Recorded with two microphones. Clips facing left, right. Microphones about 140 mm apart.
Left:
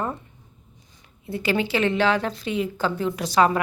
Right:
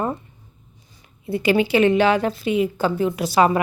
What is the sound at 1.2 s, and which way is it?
Speech, 15° right (ahead or behind).